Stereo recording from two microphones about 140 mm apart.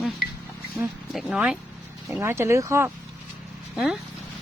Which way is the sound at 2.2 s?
20° right (ahead or behind).